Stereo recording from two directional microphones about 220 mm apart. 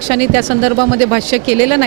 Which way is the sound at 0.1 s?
10° right (ahead or behind).